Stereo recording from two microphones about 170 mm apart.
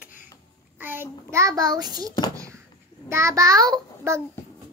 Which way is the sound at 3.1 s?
15° right (ahead or behind).